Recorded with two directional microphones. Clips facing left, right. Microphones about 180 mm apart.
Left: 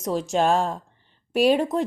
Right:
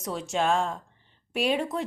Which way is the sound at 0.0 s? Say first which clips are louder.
Left 6 dB; 35° left (ahead or behind).